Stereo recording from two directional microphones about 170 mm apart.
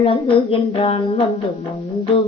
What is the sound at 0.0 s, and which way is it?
Child singing, 35° left (ahead or behind).